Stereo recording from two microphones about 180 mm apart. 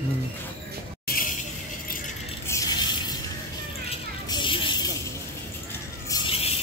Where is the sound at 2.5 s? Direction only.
20° left (ahead or behind).